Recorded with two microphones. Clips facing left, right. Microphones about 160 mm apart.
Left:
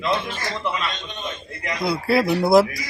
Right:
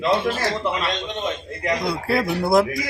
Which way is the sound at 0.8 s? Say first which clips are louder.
Right 5 dB; 90° right.